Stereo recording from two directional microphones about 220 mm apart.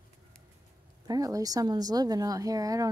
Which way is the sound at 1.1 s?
15° right (ahead or behind).